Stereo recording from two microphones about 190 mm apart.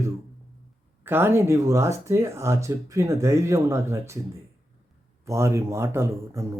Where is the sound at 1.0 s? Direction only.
10° right (ahead or behind).